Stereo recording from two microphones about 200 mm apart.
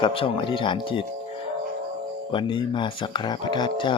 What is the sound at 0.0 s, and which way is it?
Speech, 25° left (ahead or behind).